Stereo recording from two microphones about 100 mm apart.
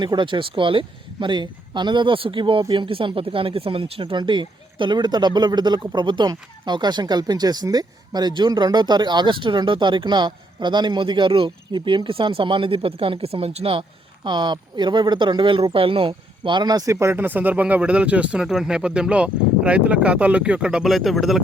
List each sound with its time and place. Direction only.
0.0 s speech: 50° right (ahead or behind); by 13.8 s 80° right
14.3 s speech: 50° right (ahead or behind); by 21.4 s centre (ahead or behind)